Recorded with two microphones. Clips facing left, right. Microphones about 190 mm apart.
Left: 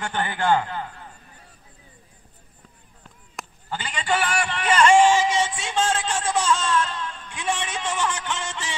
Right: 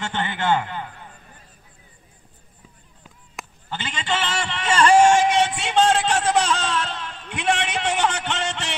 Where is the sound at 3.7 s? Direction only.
25° right (ahead or behind).